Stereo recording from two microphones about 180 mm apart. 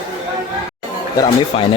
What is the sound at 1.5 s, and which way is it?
Speech, 30° left (ahead or behind).